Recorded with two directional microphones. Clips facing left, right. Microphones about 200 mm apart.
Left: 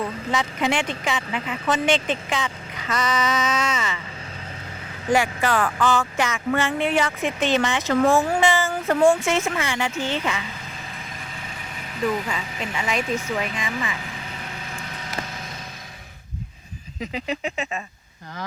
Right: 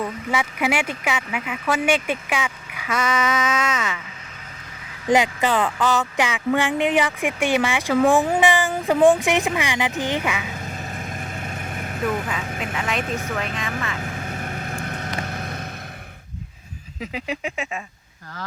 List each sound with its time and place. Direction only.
0.0 s speech: 5° right (ahead or behind)
5.0 s speech: 20° right (ahead or behind)
10.5 s vehicle: 45° right (ahead or behind)
12.4 s speech: 50° right (ahead or behind)
12.7 s speech: centre (ahead or behind)
13.0 s speech: 50° right (ahead or behind)
13.6 s speech: centre (ahead or behind)
14.0 s vehicle: 50° right (ahead or behind)
17.0 s speech: 5° right (ahead or behind)